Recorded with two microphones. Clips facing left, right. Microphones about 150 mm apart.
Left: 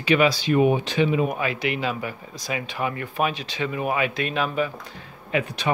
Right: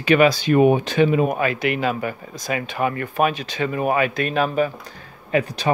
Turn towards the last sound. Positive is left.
turn(degrees=-40)  # may be behind; listen again after turning